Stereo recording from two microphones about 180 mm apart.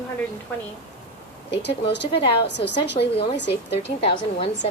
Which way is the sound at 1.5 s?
70° left (ahead or behind).